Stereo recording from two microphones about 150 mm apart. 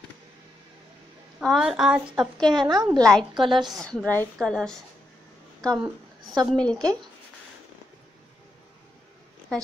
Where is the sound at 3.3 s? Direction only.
30° right (ahead or behind).